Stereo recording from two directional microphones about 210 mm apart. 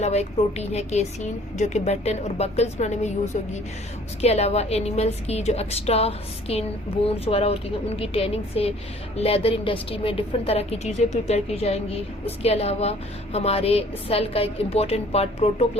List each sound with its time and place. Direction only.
0.0 s a woman's voice: 30° left (ahead or behind)
4.2 s a woman's voice: 30° left (ahead or behind)